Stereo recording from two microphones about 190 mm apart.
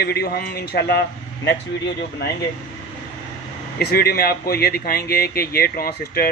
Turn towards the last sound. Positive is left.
turn(degrees=50)  # may be behind; listen again after turning